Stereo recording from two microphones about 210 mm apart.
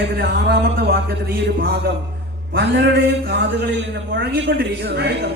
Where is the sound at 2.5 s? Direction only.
55° right (ahead or behind).